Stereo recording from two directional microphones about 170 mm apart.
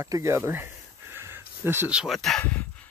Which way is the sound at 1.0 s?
15° right (ahead or behind).